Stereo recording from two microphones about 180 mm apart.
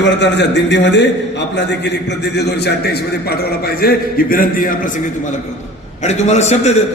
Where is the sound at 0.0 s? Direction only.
75° left (ahead or behind); by 6.8 s 40° left (ahead or behind).